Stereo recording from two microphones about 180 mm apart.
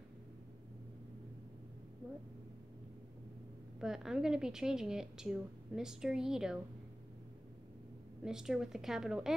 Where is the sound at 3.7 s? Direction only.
5° right (ahead or behind).